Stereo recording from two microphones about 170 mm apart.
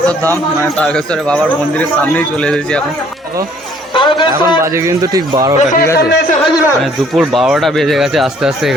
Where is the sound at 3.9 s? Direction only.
30° left (ahead or behind).